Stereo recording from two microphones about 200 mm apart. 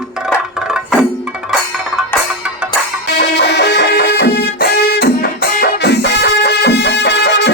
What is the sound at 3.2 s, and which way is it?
Music, 55° left (ahead or behind).